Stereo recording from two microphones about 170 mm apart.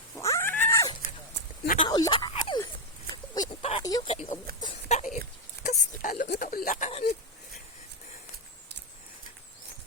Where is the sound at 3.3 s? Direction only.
25° left (ahead or behind).